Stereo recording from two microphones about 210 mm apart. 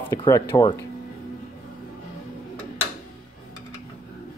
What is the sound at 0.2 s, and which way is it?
Speech, 15° left (ahead or behind).